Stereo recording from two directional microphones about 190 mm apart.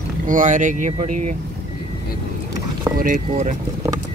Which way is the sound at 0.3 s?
40° right (ahead or behind).